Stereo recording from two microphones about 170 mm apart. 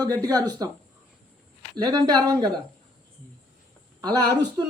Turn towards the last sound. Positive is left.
turn(degrees=-25)  # may be behind; listen again after turning